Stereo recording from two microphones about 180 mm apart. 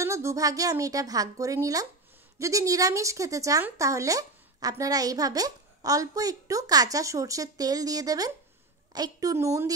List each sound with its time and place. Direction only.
0.0 s speech: 15° right (ahead or behind)